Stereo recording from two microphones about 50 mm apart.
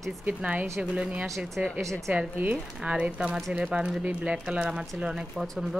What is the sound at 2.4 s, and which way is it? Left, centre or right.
Speech, right.